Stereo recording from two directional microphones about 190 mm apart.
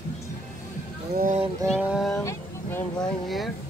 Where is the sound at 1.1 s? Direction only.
45° right (ahead or behind).